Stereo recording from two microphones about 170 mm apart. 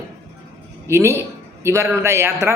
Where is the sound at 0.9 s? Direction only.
15° right (ahead or behind).